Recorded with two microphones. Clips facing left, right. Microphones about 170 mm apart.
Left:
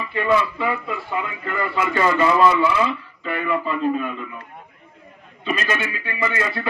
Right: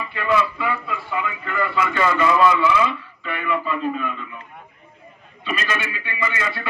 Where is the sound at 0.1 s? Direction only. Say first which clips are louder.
Left 2 dB; 35° left (ahead or behind).